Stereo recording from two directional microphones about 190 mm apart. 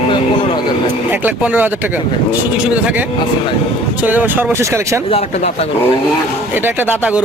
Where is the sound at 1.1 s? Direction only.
10° right (ahead or behind).